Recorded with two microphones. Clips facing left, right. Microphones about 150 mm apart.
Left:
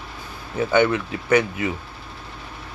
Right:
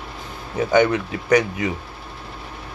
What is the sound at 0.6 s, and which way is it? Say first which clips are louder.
Speech: right 2 dB; 40° right (ahead or behind).